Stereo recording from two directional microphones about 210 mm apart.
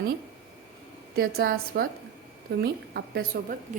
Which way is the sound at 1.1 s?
45° right (ahead or behind).